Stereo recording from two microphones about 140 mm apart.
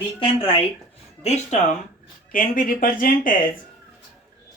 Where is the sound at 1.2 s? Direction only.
55° left (ahead or behind).